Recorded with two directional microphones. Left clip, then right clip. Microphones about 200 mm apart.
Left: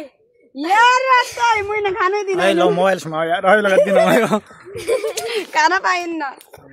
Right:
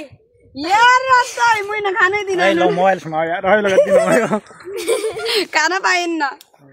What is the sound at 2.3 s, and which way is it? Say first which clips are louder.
Speech: even; 20° left (ahead or behind).